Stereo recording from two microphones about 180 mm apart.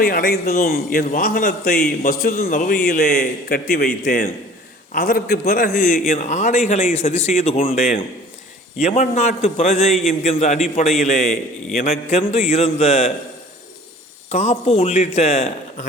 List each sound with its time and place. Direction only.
0.0 s a man's voice: 50° left (ahead or behind); by 13.1 s 35° left (ahead or behind)
14.3 s a man's voice: 35° left (ahead or behind)